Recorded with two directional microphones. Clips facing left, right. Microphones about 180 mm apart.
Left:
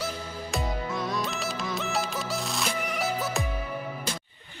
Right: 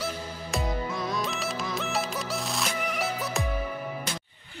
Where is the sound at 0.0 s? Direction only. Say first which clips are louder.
Even; centre (ahead or behind).